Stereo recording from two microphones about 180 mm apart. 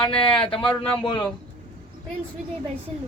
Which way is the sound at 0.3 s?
30° left (ahead or behind).